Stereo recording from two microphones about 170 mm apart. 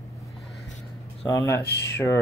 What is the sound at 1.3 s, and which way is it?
Speech, 15° left (ahead or behind).